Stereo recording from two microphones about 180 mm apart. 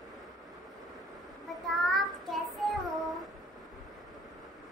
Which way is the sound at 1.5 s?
Centre (ahead or behind).